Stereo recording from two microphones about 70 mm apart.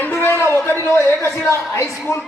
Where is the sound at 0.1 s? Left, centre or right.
Left.